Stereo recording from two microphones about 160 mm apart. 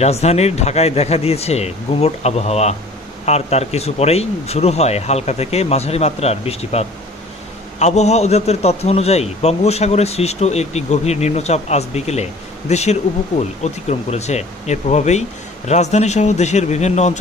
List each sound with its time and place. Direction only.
0.0 s a man's voice: 40° left (ahead or behind)